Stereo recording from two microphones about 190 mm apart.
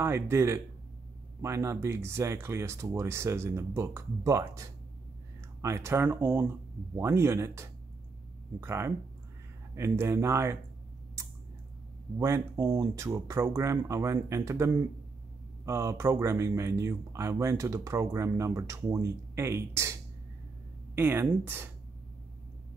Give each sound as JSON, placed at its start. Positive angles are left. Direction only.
{"t": 0.0, "sound": "speech", "side_deg": -15}
{"t": 12.2, "sound": "speech", "side_deg": -15}
{"t": 20.9, "sound": "speech", "side_deg": -10}